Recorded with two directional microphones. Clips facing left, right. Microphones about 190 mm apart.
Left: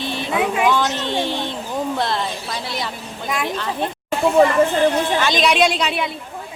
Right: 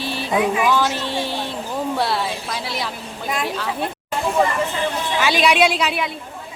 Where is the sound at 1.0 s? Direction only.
5° right (ahead or behind).